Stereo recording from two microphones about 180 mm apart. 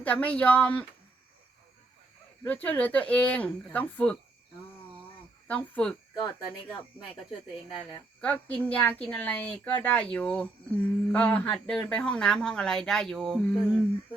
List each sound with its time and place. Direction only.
0.0 s a woman's voice: 10° left (ahead or behind)
2.4 s a woman's voice: 10° left (ahead or behind)
5.5 s a woman's voice: 5° left (ahead or behind)
7.7 s speech: 25° left (ahead or behind)
8.2 s a woman's voice: 10° left (ahead or behind)